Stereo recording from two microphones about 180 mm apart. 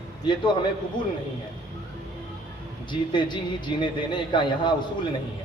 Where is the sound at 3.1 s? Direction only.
25° left (ahead or behind).